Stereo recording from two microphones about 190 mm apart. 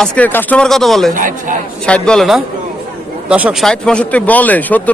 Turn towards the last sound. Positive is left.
turn(degrees=10)  # may be behind; listen again after turning